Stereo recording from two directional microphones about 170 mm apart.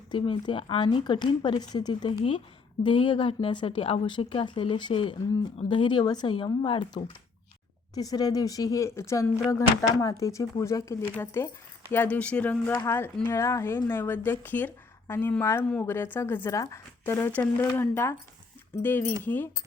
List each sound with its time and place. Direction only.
0.1 s a woman's voice: 30° left (ahead or behind); by 19.5 s 10° left (ahead or behind)